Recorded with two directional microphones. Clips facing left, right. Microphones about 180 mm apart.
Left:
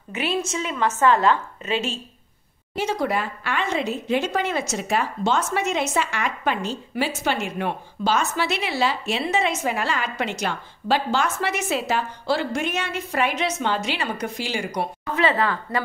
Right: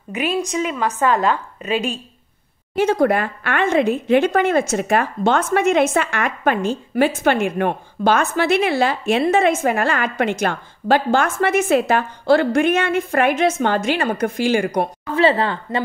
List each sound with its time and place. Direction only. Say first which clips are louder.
0.1 s a woman's voice: right 4 dB; 15° right (ahead or behind)
2.7 s speech: right 8 dB; 55° right (ahead or behind)
15.1 s a woman's voice: right 5 dB; 30° right (ahead or behind)